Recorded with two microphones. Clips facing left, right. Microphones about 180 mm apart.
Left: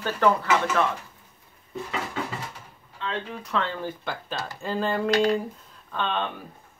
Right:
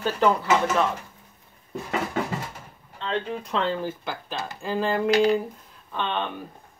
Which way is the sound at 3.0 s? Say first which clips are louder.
Right 4 dB; 45° right (ahead or behind).